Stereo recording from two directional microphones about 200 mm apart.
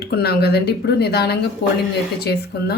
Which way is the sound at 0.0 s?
55° left (ahead or behind).